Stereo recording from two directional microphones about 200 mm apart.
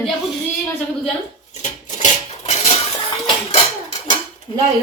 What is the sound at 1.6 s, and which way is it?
Dishes, 35° left (ahead or behind).